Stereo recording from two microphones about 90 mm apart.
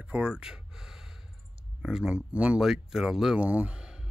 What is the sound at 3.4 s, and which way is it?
Speech, 15° right (ahead or behind).